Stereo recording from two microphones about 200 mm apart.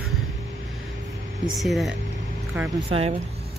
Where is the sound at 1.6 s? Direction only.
Centre (ahead or behind).